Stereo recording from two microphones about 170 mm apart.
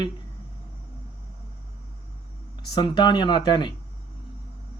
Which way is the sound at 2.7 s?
25° left (ahead or behind).